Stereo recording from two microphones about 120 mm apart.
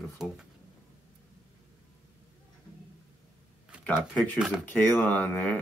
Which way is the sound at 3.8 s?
10° left (ahead or behind).